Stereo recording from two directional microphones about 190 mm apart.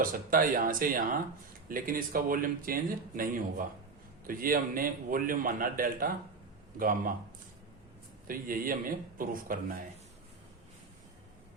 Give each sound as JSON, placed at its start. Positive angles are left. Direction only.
{"t": 0.0, "sound": "speech", "side_deg": -50}
{"t": 8.3, "sound": "speech", "side_deg": -50}